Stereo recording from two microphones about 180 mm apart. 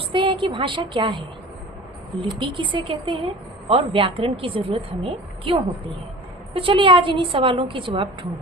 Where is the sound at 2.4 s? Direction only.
25° right (ahead or behind).